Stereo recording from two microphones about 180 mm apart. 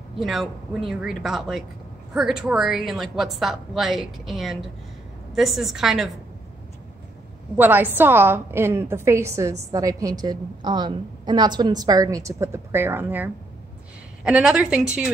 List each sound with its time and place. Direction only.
0.2 s a woman's voice: centre (ahead or behind)
7.5 s a woman's voice: 10° right (ahead or behind)